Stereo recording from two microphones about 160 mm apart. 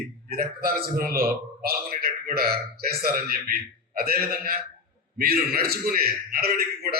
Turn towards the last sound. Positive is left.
turn(degrees=-70)  # may be behind; listen again after turning